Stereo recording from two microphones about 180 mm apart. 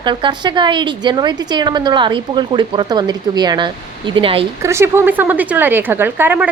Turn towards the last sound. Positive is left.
turn(degrees=-10)  # may be behind; listen again after turning